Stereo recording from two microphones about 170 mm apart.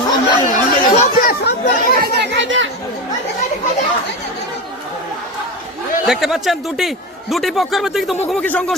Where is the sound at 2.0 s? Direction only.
80° right.